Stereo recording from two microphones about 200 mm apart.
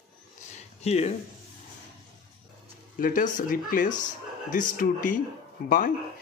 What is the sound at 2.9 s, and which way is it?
Speech, 40° left (ahead or behind).